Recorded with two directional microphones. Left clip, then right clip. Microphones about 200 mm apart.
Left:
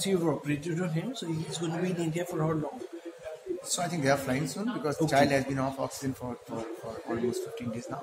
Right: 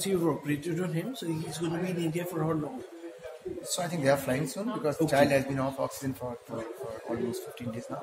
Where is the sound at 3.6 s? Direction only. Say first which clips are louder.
Right 1 dB; centre (ahead or behind).